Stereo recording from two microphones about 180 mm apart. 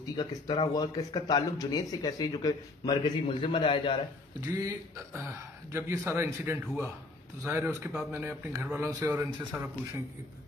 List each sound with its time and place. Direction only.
0.0 s speech: 20° left (ahead or behind)
4.6 s a man's voice: 15° right (ahead or behind)